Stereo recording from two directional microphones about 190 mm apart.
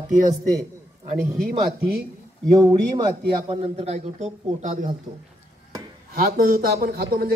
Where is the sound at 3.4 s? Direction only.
30° right (ahead or behind).